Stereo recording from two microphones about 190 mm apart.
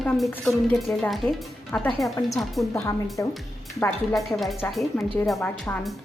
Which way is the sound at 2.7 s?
15° left (ahead or behind).